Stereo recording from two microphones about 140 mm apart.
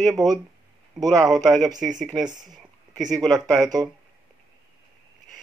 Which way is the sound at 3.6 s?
25° right (ahead or behind).